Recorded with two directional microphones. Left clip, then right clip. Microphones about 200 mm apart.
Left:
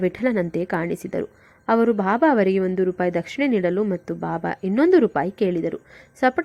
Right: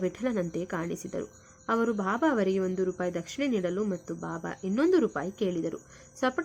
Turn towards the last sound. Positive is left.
turn(degrees=25)  # may be behind; listen again after turning